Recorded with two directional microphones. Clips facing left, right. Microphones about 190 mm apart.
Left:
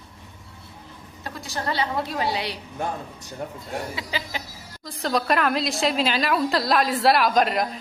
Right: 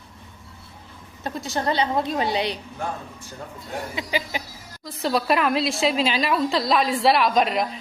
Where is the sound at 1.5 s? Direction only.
20° right (ahead or behind).